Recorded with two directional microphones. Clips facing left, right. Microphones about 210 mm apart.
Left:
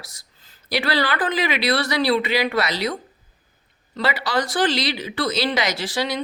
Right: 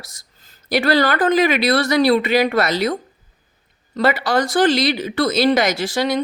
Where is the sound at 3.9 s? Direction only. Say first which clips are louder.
Right 5 dB; 50° right (ahead or behind).